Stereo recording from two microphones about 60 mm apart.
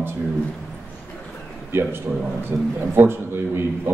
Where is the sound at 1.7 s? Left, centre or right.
Right.